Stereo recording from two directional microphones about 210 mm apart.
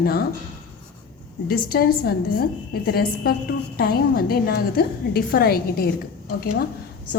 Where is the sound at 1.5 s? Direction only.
45° left (ahead or behind).